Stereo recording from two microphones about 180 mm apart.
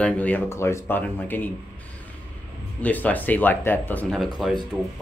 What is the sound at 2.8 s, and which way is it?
Speech, 10° left (ahead or behind).